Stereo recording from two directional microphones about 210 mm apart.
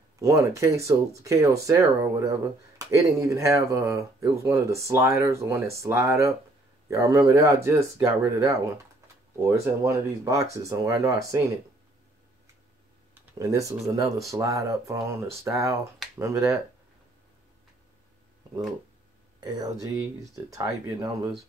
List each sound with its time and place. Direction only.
0.2 s speech: 15° right (ahead or behind)
13.1 s speech: 10° right (ahead or behind)
19.4 s speech: 20° right (ahead or behind)